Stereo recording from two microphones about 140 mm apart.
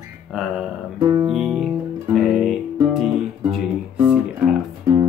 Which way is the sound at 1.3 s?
5° right (ahead or behind).